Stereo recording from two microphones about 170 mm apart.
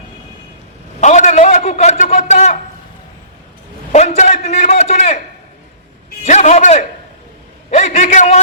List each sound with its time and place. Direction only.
1.0 s a man's voice: 45° left (ahead or behind)
3.9 s a man's voice: 40° left (ahead or behind)
6.2 s a man's voice: 45° left (ahead or behind)